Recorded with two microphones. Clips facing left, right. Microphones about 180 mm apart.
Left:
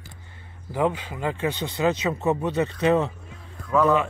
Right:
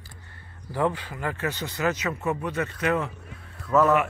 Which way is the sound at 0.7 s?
20° left (ahead or behind).